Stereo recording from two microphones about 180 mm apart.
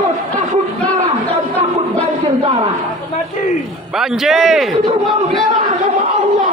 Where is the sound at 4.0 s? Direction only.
Centre (ahead or behind).